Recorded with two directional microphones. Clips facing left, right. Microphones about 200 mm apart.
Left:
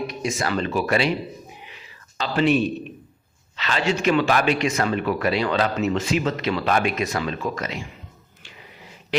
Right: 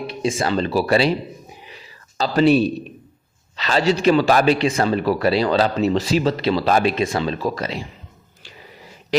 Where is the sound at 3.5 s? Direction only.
35° right (ahead or behind).